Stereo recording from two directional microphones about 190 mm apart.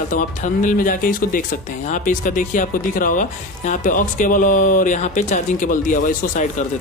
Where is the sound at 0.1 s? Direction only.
40° left (ahead or behind).